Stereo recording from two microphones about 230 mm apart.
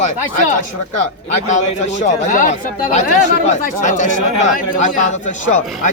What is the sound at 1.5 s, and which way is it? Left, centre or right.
Speech, left.